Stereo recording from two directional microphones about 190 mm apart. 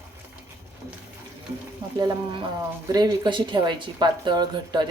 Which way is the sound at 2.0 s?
20° right (ahead or behind).